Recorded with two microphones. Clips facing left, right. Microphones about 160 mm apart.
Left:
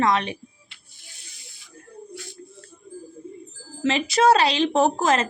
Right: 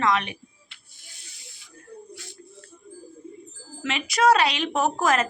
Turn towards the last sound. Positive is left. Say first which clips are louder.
# left 3 dB
turn(degrees=25)  # may be behind; listen again after turning